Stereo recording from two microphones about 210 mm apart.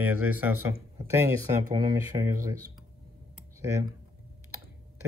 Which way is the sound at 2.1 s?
25° right (ahead or behind).